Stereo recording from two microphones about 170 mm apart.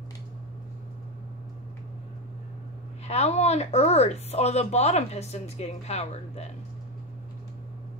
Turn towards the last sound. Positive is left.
turn(degrees=40)  # may be behind; listen again after turning